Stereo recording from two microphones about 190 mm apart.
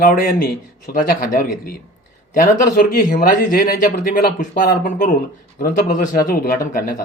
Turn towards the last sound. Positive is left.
turn(degrees=50)  # may be behind; listen again after turning